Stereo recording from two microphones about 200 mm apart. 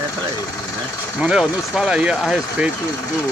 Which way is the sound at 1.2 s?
5° right (ahead or behind).